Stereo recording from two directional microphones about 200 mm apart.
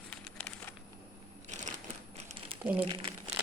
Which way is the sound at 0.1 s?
5° left (ahead or behind).